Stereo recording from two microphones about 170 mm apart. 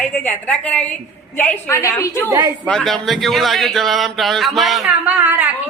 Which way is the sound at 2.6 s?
5° left (ahead or behind).